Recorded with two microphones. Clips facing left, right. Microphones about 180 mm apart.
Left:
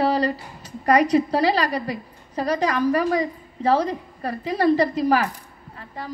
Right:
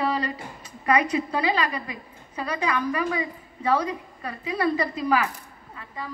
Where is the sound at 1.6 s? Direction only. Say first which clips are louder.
Left 4 dB; 35° left (ahead or behind).